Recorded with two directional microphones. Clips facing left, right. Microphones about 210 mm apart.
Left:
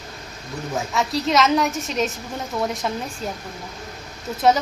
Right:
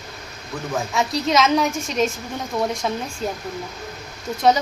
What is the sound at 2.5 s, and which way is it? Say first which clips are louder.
Speech: right 2 dB; 20° right (ahead or behind).